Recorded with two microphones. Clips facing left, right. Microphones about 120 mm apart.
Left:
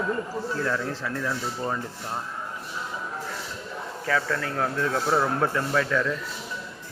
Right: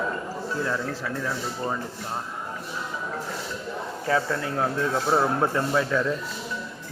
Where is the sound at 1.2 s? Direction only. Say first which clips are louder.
Left 1 dB; 10° right (ahead or behind).